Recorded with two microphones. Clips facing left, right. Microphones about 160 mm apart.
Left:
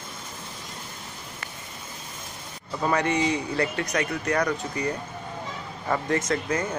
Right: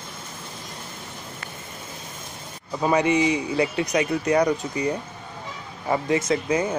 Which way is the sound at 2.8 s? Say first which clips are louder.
Right 4 dB; 15° right (ahead or behind).